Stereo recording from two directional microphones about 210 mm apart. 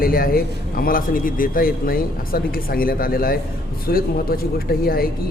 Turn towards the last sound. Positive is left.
turn(degrees=45)  # may be behind; listen again after turning